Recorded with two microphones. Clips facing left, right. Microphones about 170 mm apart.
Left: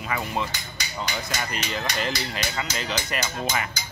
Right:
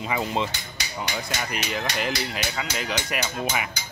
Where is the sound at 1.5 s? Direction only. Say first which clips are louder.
Right 1 dB; 10° right (ahead or behind).